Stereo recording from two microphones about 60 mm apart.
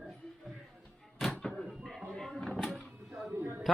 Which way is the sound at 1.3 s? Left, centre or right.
Centre.